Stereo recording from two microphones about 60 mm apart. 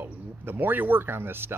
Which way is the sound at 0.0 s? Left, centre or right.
Right.